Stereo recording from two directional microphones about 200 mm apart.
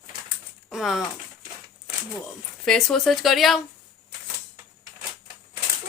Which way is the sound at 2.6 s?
Centre (ahead or behind).